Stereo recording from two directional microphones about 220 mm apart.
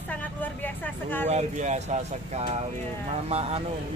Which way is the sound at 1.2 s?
30° right (ahead or behind).